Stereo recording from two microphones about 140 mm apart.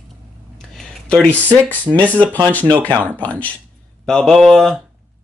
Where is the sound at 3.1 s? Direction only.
10° left (ahead or behind).